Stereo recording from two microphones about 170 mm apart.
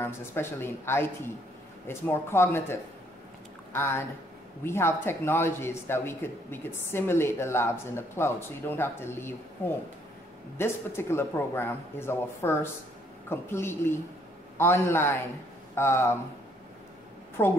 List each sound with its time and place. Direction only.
0.0 s speech: 15° left (ahead or behind)
17.4 s speech: 15° left (ahead or behind)